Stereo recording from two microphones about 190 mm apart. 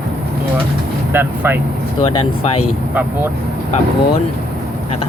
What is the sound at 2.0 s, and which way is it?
Speech, 30° left (ahead or behind).